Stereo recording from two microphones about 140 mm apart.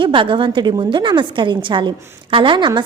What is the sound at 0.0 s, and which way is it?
A woman's voice, 35° right (ahead or behind).